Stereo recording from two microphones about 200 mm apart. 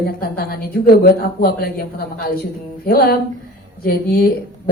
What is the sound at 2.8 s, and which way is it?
Speech, 50° left (ahead or behind).